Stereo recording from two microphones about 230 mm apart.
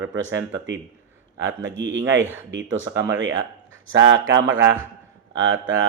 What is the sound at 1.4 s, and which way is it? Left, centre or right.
Speech, right.